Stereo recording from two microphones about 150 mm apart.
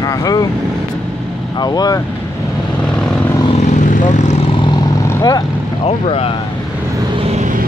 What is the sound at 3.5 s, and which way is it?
Vehicle, 50° left (ahead or behind).